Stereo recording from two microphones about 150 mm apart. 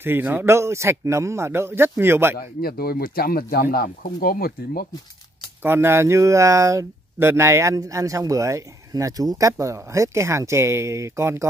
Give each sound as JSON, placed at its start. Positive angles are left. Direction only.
{"t": 0.0, "sound": "speech", "side_deg": -10}
{"t": 2.3, "sound": "speech", "side_deg": 90}
{"t": 5.6, "sound": "speech", "side_deg": -15}